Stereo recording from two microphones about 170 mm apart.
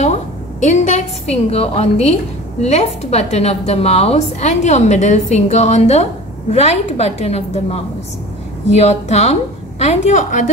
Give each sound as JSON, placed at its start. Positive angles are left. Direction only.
{"t": 0.0, "sound": "a woman's voice", "side_deg": 45}